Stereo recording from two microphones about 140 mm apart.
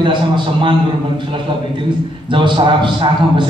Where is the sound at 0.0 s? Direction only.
35° right (ahead or behind).